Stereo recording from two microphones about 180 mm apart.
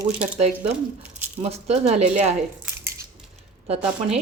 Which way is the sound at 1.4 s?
35° right (ahead or behind).